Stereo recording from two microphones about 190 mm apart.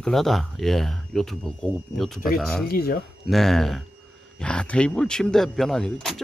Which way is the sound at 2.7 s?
55° left (ahead or behind).